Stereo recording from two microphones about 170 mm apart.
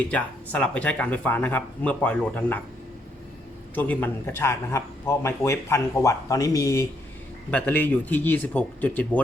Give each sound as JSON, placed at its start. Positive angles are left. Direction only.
{"t": 0.1, "sound": "speech", "side_deg": 5}
{"t": 3.8, "sound": "speech", "side_deg": 10}